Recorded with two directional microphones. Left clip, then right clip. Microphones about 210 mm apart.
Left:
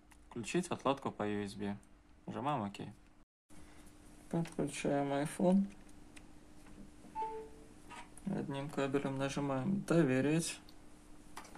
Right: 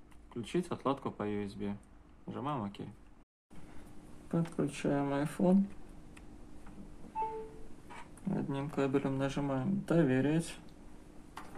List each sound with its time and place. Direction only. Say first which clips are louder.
0.3 s speech: right 1 dB; 25° left (ahead or behind)
4.3 s speech: right 3 dB; 10° left (ahead or behind)
8.3 s speech: right 3 dB; 5° left (ahead or behind); by 10.6 s 25° left (ahead or behind)